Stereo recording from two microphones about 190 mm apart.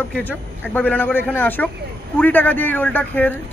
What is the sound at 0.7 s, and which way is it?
Speech, 10° left (ahead or behind).